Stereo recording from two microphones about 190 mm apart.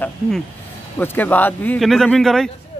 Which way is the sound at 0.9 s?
10° left (ahead or behind).